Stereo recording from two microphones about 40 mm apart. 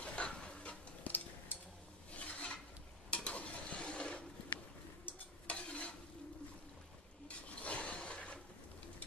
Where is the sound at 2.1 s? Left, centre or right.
Left.